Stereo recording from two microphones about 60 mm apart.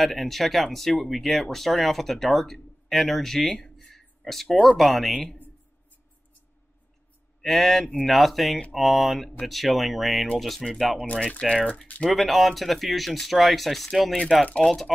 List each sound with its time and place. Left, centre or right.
0.0 s speech: centre
7.4 s speech: centre
11.1 s speech: centre
12.1 s speech: centre
14.1 s speech: centre
14.6 s speech: centre